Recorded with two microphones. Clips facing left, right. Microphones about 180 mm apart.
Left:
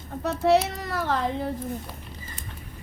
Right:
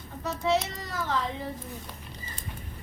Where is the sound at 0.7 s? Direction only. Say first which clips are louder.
Left 4 dB; 65° left (ahead or behind).